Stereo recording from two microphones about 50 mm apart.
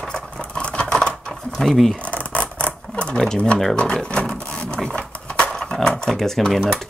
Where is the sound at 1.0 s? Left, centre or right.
Centre.